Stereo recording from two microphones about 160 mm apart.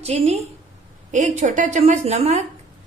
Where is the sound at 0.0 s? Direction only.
40° right (ahead or behind).